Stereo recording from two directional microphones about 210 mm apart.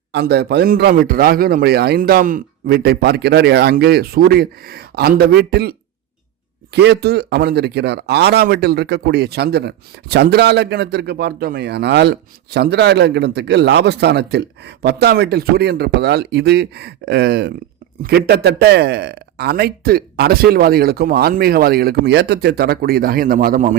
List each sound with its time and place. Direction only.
0.1 s speech: 50° right (ahead or behind)
6.7 s speech: 55° right (ahead or behind)